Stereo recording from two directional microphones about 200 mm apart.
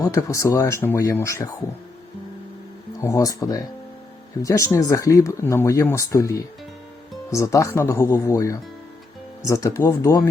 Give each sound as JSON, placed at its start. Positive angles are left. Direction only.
{"t": 0.0, "sound": "speech", "side_deg": 15}
{"t": 3.0, "sound": "speech", "side_deg": 15}